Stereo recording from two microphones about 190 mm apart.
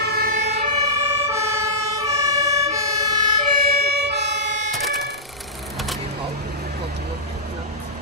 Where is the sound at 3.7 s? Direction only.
55° right (ahead or behind).